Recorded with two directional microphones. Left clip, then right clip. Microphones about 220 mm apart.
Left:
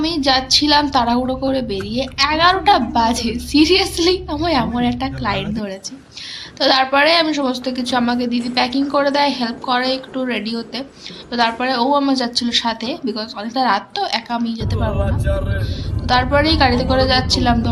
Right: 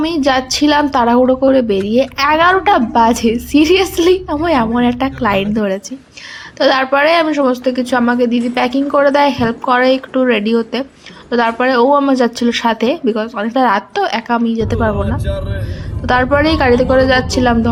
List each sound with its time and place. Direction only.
0.3 s a woman's voice: 30° right (ahead or behind)
16.0 s a woman's voice: 30° right (ahead or behind)